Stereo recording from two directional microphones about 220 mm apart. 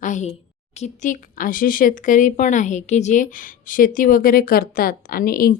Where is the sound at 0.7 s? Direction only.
30° left (ahead or behind).